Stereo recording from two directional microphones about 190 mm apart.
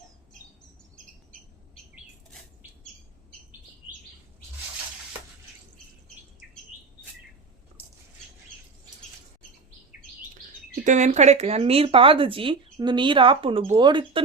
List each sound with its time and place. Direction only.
10.8 s speech: 40° right (ahead or behind)